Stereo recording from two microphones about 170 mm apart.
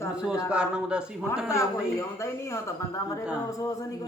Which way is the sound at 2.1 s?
15° left (ahead or behind).